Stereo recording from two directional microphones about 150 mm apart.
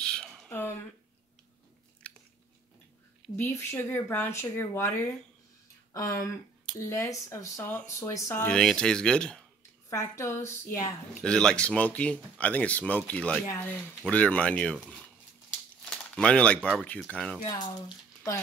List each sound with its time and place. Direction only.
0.0 s a sound: 5° left (ahead or behind)
0.5 s a sound: 15° left (ahead or behind)
2.0 s biting: 5° left (ahead or behind)
3.6 s speech: 15° left (ahead or behind)
5.9 s a woman's voice: 20° left (ahead or behind)
8.5 s speech: 5° left (ahead or behind)
9.8 s a woman's voice: 20° left (ahead or behind)
11.1 s speech: 5° left (ahead or behind)
15.8 s speech: 5° left (ahead or behind)